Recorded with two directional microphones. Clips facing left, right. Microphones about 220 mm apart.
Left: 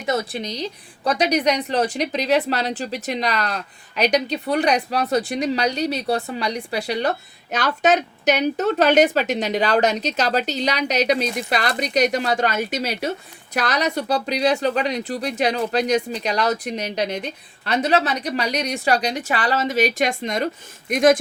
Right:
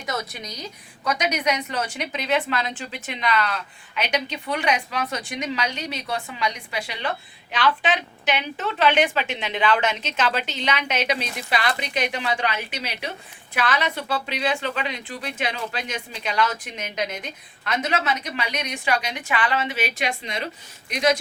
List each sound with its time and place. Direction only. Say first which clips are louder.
0.0 s a woman's voice: left 7 dB; 30° left (ahead or behind); by 21.2 s 50° left (ahead or behind)